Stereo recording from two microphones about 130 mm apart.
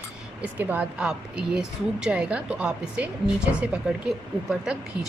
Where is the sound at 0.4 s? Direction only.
10° right (ahead or behind).